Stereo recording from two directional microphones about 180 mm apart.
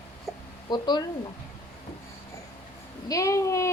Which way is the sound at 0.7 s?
25° left (ahead or behind).